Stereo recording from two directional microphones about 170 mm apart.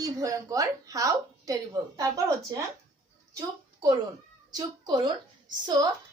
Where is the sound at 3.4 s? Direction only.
20° right (ahead or behind).